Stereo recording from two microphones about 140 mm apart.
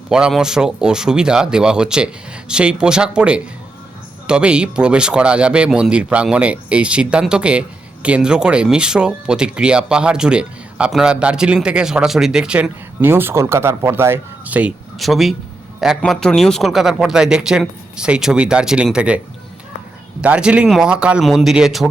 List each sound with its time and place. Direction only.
0.1 s a man's voice: 5° right (ahead or behind)
14.9 s a man's voice: centre (ahead or behind)
20.2 s a man's voice: 10° right (ahead or behind)